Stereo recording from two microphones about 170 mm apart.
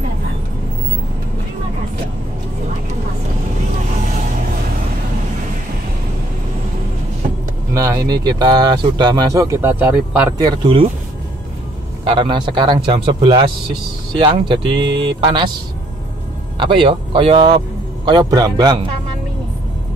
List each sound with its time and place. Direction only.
7.7 s speech: 20° right (ahead or behind)
10.3 s speech: 30° right (ahead or behind)
12.1 s speech: 30° right (ahead or behind)
16.5 s speech: 30° right (ahead or behind)